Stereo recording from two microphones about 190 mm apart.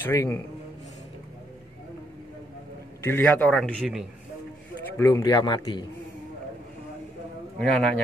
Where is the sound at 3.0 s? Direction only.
10° left (ahead or behind).